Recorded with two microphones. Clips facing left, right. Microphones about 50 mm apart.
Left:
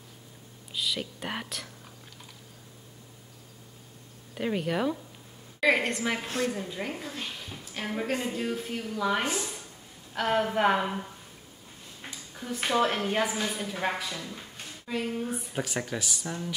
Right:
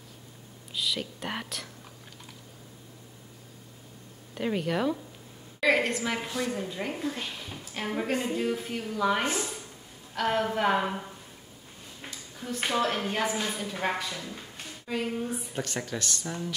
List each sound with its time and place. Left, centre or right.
0.7 s a woman's voice: centre
4.4 s a woman's voice: centre
9.2 s speech: right
10.1 s a woman's voice: centre
12.0 s a sound: centre
12.6 s a woman's voice: centre
15.2 s a woman's voice: centre